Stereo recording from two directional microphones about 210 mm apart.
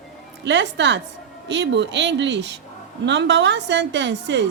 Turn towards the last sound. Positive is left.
turn(degrees=-60)  # may be behind; listen again after turning